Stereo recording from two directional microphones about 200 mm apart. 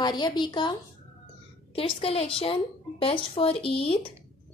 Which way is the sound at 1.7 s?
30° left (ahead or behind).